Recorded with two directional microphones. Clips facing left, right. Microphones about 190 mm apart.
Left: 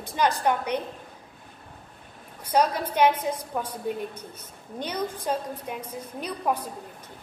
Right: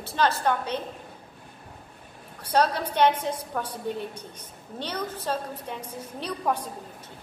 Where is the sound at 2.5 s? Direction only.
10° left (ahead or behind).